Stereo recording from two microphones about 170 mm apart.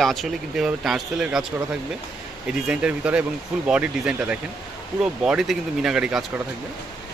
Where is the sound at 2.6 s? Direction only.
5° right (ahead or behind).